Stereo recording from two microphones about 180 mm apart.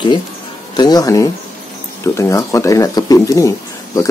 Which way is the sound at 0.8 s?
20° left (ahead or behind).